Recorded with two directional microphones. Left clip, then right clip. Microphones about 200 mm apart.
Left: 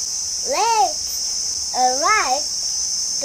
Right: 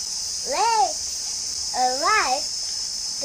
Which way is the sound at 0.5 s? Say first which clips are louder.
Left 3 dB; 15° left (ahead or behind).